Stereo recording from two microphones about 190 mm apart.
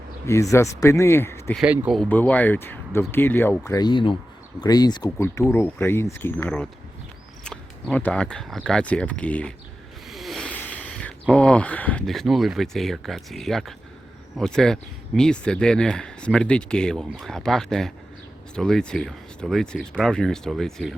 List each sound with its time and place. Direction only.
0.5 s speech: 15° left (ahead or behind)
1.5 s speech: 10° right (ahead or behind)
2.0 s speech: 10° left (ahead or behind)